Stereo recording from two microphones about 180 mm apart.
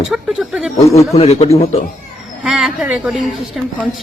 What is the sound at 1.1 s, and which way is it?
Speech, 35° left (ahead or behind).